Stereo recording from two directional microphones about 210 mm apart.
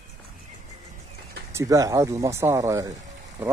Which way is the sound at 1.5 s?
15° right (ahead or behind).